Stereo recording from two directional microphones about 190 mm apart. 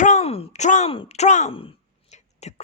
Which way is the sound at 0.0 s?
35° left (ahead or behind).